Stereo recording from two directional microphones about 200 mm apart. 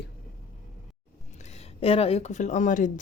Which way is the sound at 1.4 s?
30° left (ahead or behind).